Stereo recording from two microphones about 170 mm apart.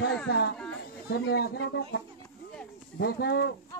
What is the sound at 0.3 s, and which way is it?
Speech, 75° left (ahead or behind).